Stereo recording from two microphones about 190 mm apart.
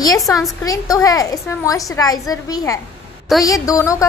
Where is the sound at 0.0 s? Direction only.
20° left (ahead or behind).